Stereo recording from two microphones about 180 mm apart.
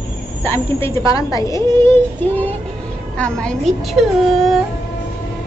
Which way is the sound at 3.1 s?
5° left (ahead or behind).